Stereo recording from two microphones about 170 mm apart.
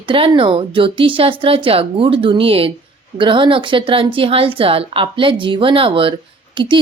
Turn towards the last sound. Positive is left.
turn(degrees=-30)  # may be behind; listen again after turning